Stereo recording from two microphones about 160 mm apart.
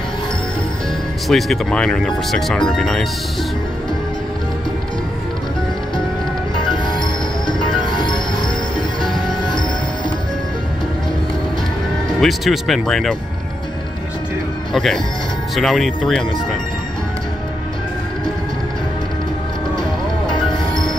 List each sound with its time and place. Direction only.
1.3 s speech: 5° left (ahead or behind)
6.6 s music: 30° left (ahead or behind)
12.1 s speech: centre (ahead or behind)
14.7 s speech: centre (ahead or behind)